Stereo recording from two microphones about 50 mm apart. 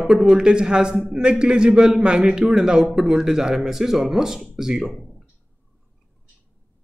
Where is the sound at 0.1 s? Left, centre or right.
Centre.